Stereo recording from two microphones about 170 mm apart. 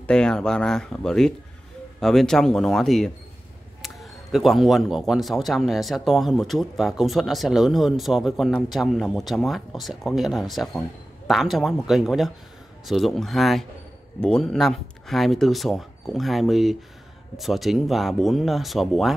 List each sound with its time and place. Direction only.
0.0 s speech: 5° left (ahead or behind)